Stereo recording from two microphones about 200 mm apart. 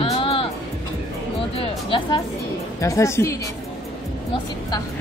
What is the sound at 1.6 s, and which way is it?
Speech, 25° left (ahead or behind).